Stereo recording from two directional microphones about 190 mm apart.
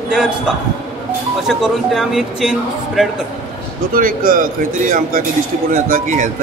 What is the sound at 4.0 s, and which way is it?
Speech, 45° right (ahead or behind).